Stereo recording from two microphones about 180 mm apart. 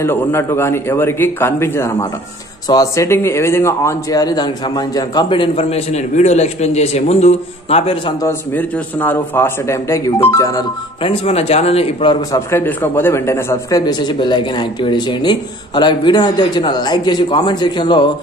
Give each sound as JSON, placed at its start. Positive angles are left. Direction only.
{"t": 0.0, "sound": "a man's voice", "side_deg": 15}
{"t": 8.2, "sound": "a man's voice", "side_deg": 10}
{"t": 11.0, "sound": "speech", "side_deg": 30}